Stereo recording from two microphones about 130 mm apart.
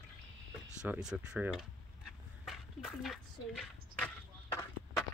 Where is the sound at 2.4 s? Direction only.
Centre (ahead or behind).